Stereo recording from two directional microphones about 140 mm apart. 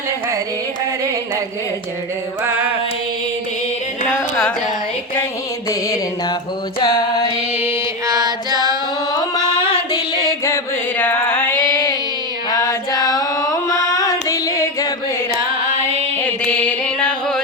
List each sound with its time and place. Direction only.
2.4 s mantra: 10° right (ahead or behind)
5.6 s carnatic music: 25° left (ahead or behind)
7.5 s mantra: 15° right (ahead or behind)
8.0 s music: 25° right (ahead or behind)
9.9 s music: 25° left (ahead or behind)
11.6 s a sound: 25° left (ahead or behind)
12.5 s music: 25° left (ahead or behind)
16.2 s music: 10° left (ahead or behind)